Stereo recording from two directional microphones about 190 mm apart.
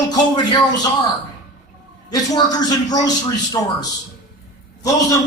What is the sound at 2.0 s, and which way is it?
A man's voice, 20° left (ahead or behind).